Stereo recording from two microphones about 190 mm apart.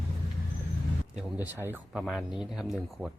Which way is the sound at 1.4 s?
10° right (ahead or behind).